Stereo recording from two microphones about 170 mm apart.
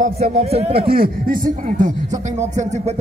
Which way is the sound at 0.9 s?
60° right (ahead or behind).